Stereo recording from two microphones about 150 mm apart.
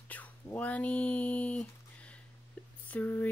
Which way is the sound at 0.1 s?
10° left (ahead or behind).